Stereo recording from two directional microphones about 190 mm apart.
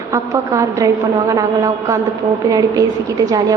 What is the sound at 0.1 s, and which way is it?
A woman's voice, 15° right (ahead or behind).